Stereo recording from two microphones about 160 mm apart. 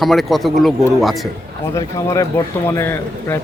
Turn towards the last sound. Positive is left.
turn(degrees=15)  # may be behind; listen again after turning